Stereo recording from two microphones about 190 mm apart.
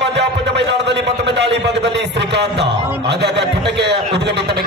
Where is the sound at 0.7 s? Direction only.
65° right (ahead or behind).